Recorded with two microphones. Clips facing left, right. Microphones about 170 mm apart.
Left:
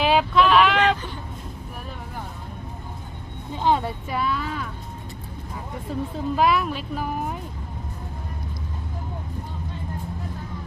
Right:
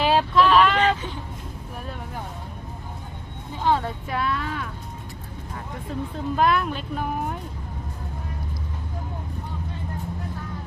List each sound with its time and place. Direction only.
0.0 s a sound: centre (ahead or behind)
3.6 s speech: 15° left (ahead or behind)
4.1 s a woman's voice: centre (ahead or behind)
6.1 s a woman's voice: 5° left (ahead or behind)